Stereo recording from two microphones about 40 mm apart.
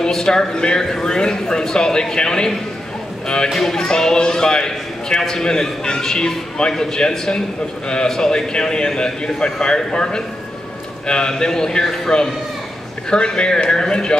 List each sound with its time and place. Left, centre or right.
0.0 s a man's voice: centre
3.4 s speech: centre
3.7 s a man's voice: centre